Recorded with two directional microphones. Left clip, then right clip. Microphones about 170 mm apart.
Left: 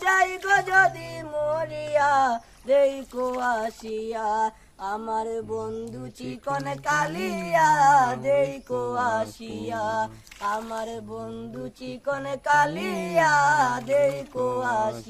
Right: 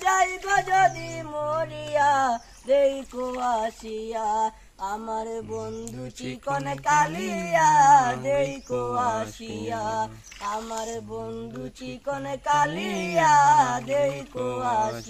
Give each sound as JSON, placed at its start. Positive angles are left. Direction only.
{"t": 0.0, "sound": "child singing", "side_deg": 20}
{"t": 5.0, "sound": "music", "side_deg": -10}
{"t": 5.8, "sound": "a sound", "side_deg": 5}
{"t": 7.8, "sound": "music", "side_deg": 25}
{"t": 8.0, "sound": "a sound", "side_deg": 5}
{"t": 9.1, "sound": "music", "side_deg": 0}
{"t": 9.6, "sound": "music", "side_deg": 30}
{"t": 12.3, "sound": "a sound", "side_deg": 15}
{"t": 14.3, "sound": "music", "side_deg": 5}